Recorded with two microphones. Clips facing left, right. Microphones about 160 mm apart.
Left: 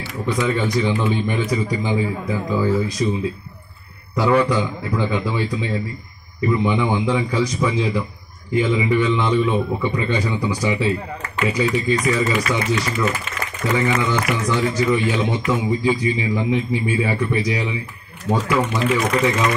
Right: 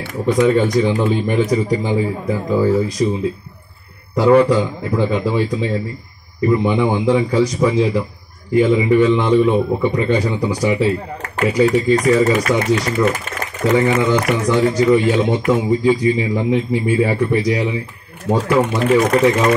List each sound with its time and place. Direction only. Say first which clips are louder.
0.0 s a man's voice: right 7 dB; 50° right (ahead or behind); by 3.1 s 35° right (ahead or behind)
4.2 s a man's voice: right 5 dB; 40° right (ahead or behind)
11.2 s a man's voice: right 6 dB; 50° right (ahead or behind)